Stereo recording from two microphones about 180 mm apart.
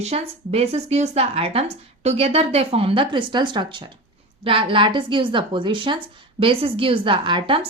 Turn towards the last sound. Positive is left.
turn(degrees=-30)  # may be behind; listen again after turning